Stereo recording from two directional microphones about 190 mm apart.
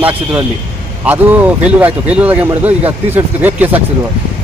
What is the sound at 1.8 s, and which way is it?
Speech, 10° right (ahead or behind).